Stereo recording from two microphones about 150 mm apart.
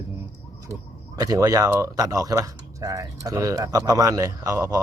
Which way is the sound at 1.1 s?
25° right (ahead or behind).